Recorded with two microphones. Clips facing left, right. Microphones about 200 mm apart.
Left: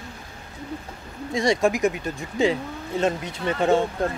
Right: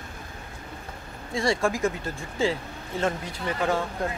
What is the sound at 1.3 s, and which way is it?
Speech, 20° left (ahead or behind).